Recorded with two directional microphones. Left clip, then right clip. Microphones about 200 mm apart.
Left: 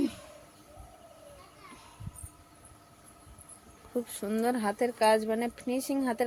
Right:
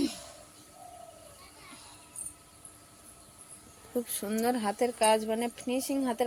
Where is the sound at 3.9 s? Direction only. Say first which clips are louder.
Even; centre (ahead or behind).